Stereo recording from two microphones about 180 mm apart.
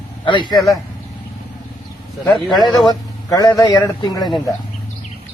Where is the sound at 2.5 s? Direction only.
25° left (ahead or behind).